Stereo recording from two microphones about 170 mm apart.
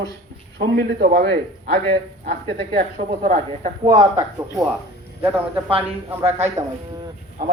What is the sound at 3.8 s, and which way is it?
Speech, 25° right (ahead or behind).